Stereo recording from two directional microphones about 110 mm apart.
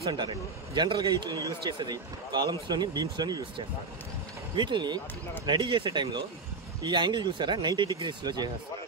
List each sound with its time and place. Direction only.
0.0 s speech: 45° right (ahead or behind)